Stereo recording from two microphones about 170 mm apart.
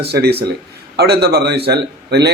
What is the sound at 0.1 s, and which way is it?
A man's voice, 70° right (ahead or behind).